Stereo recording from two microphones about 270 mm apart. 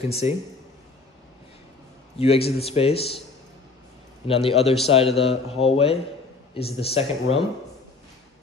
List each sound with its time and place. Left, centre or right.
0.1 s speech: left
2.1 s speech: left
4.4 s speech: left